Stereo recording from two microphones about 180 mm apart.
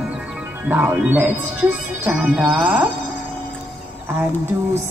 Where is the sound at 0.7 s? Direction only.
10° right (ahead or behind).